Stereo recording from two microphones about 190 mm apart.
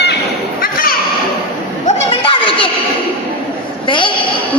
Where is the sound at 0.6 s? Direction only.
50° left (ahead or behind).